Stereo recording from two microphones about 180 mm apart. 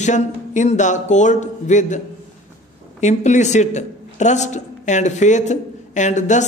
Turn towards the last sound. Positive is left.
turn(degrees=40)  # may be behind; listen again after turning